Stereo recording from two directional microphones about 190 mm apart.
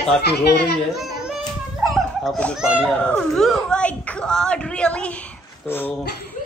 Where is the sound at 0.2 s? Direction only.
60° left (ahead or behind).